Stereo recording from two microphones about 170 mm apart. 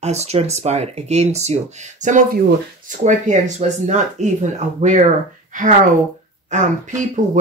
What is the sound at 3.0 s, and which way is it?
Speech, 45° right (ahead or behind).